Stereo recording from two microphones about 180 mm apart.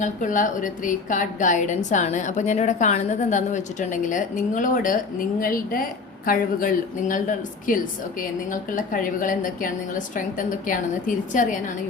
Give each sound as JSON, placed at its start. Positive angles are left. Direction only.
{"t": 0.0, "sound": "a woman's voice", "side_deg": 45}